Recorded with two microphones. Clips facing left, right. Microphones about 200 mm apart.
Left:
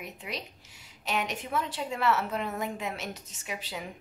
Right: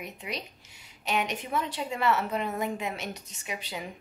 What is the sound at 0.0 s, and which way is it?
A woman's voice, centre (ahead or behind).